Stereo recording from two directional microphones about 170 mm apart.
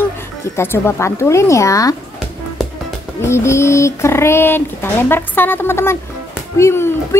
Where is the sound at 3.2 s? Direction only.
15° left (ahead or behind).